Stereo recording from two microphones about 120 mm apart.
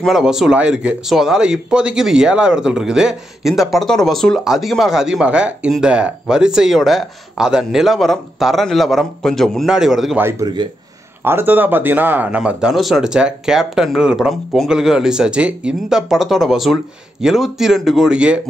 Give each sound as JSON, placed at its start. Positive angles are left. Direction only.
{"t": 0.0, "sound": "speech", "side_deg": 0}
{"t": 10.4, "sound": "speech", "side_deg": -40}
{"t": 11.2, "sound": "speech", "side_deg": -15}